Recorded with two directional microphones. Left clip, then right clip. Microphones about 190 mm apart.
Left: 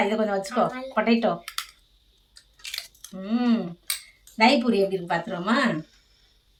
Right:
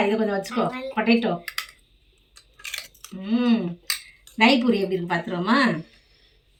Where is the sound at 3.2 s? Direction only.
20° left (ahead or behind).